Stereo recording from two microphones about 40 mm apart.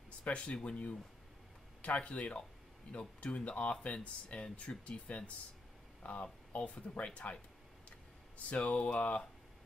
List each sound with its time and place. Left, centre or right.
0.2 s speech: left
8.5 s speech: left